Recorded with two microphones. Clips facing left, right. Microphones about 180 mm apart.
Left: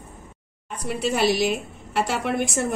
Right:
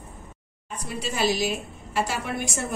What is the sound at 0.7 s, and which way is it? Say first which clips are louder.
A woman's voice: left 6 dB; 60° left (ahead or behind).